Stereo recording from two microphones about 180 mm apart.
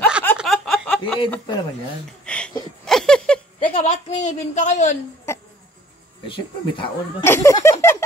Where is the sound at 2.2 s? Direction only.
5° left (ahead or behind).